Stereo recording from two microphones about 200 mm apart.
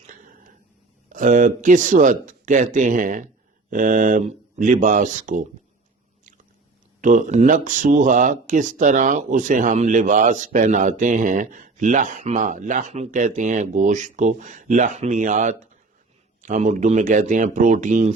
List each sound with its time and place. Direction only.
1.1 s speech: 40° right (ahead or behind)
7.0 s speech: 40° right (ahead or behind)